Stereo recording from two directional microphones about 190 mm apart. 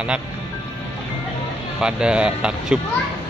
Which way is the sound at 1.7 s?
5° right (ahead or behind).